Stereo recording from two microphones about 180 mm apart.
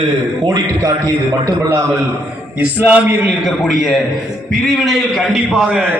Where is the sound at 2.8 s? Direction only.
10° right (ahead or behind).